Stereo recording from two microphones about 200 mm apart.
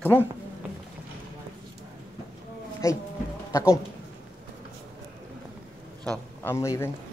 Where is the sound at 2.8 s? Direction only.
15° left (ahead or behind).